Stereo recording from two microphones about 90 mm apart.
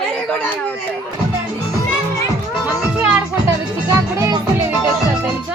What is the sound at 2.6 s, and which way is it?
Music, 10° right (ahead or behind).